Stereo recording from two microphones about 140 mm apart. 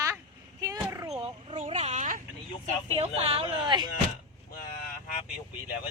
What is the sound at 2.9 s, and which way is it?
Speech, 45° right (ahead or behind).